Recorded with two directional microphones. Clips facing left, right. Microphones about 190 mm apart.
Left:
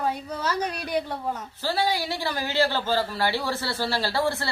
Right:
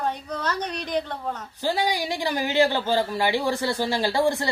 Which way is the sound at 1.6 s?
15° right (ahead or behind).